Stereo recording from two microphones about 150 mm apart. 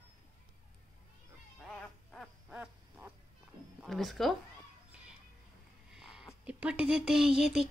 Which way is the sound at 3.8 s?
Centre (ahead or behind).